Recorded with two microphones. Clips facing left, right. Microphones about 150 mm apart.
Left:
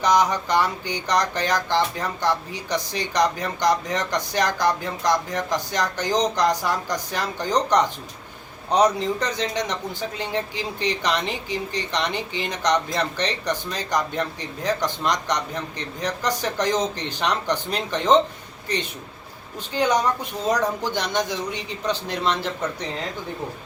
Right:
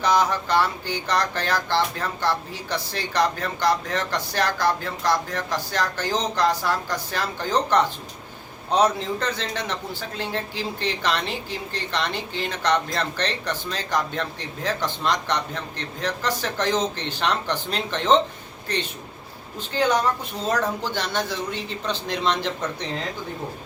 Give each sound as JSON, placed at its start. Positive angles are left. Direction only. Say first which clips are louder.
{"t": 0.0, "sound": "a man's voice", "louder": "left 1 dB", "side_deg": 15}
{"t": 19.7, "sound": "a man's voice", "louder": "even", "side_deg": 15}